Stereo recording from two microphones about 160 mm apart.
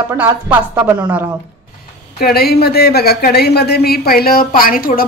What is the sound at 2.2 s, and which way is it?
Speech, 75° left (ahead or behind).